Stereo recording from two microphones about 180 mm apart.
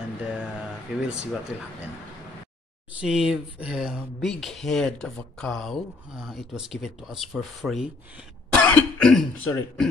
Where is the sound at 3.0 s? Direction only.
5° right (ahead or behind).